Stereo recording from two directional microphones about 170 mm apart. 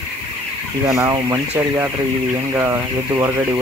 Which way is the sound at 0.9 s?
15° right (ahead or behind).